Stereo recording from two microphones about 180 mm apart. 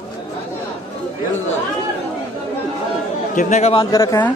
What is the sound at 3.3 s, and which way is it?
Speech, 40° left (ahead or behind).